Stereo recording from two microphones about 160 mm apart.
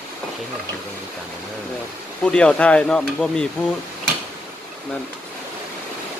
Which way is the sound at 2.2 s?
5° left (ahead or behind).